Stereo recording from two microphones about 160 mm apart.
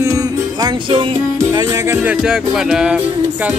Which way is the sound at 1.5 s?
20° right (ahead or behind).